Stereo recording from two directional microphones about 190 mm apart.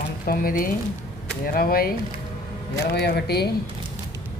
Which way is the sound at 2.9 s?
60° left (ahead or behind).